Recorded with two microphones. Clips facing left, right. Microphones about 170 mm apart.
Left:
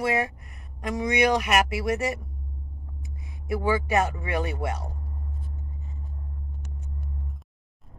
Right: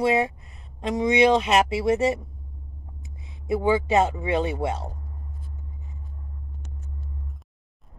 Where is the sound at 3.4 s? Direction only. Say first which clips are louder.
Right 4 dB; 20° right (ahead or behind).